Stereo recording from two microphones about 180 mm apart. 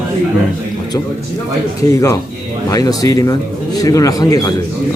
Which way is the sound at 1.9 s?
15° left (ahead or behind).